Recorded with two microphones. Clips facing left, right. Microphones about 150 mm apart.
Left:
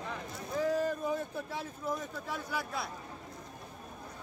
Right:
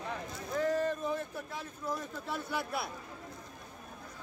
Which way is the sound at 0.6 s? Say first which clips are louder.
Even; 10° left (ahead or behind).